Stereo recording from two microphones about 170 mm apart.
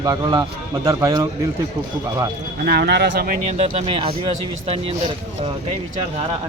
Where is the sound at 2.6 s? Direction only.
75° right (ahead or behind).